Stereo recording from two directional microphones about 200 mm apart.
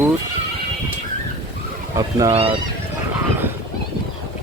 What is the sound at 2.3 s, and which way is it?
Speech, 30° right (ahead or behind).